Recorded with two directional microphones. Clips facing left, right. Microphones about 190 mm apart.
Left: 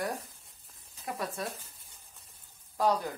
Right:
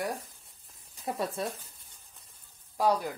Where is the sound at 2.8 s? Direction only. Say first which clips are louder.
Right 1 dB; 10° right (ahead or behind).